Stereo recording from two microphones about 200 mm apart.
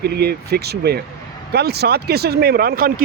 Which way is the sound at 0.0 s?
55° right (ahead or behind).